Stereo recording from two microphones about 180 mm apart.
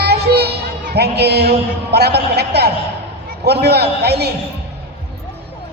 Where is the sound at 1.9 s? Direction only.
65° right (ahead or behind).